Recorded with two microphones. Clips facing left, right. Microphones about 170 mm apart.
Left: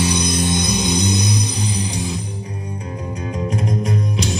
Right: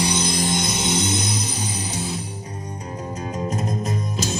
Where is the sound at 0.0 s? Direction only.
25° right (ahead or behind).